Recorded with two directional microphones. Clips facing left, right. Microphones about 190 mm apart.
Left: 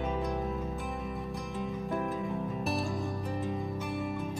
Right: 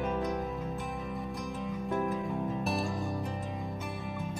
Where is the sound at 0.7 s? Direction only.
Centre (ahead or behind).